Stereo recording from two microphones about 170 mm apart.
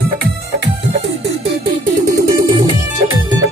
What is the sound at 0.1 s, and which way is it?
Music, 85° right.